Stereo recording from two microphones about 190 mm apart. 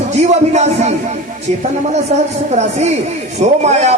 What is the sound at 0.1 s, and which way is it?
Speech, 35° right (ahead or behind).